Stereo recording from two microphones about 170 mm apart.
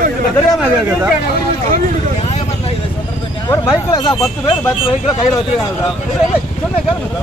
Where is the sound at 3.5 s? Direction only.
20° left (ahead or behind).